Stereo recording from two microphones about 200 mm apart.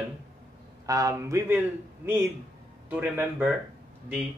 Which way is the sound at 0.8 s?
15° right (ahead or behind).